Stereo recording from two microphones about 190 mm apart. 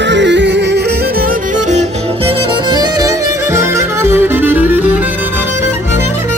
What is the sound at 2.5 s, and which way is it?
Music, 20° right (ahead or behind).